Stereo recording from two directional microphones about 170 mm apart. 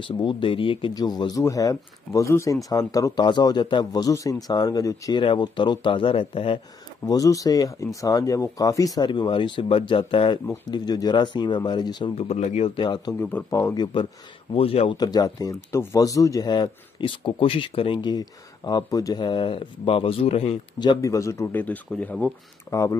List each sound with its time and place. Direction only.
0.2 s speech: 30° left (ahead or behind)
7.1 s speech: 20° left (ahead or behind)
13.2 s a man's voice: 10° left (ahead or behind)
14.5 s speech: 35° left (ahead or behind)
15.0 s speech: 20° left (ahead or behind)